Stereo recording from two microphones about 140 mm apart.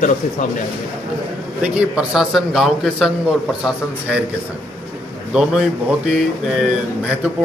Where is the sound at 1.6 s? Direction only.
5° right (ahead or behind).